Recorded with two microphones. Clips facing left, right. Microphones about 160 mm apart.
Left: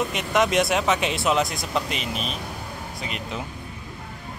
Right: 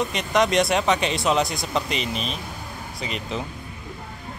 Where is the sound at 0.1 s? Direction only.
5° left (ahead or behind).